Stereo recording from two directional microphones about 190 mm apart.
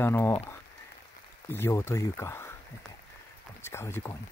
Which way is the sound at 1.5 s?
10° left (ahead or behind).